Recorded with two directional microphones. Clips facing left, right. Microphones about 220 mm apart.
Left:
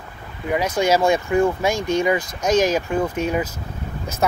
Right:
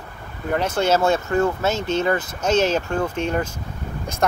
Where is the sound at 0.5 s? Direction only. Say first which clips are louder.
Left 1 dB; 10° left (ahead or behind).